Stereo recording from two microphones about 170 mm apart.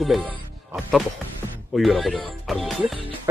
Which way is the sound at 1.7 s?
Centre (ahead or behind).